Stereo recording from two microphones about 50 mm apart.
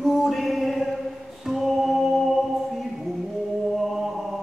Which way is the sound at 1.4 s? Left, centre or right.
Centre.